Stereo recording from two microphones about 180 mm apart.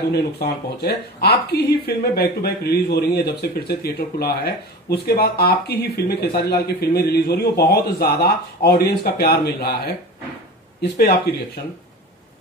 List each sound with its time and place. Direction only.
0.1 s speech: 65° left (ahead or behind)
10.8 s speech: 65° left (ahead or behind)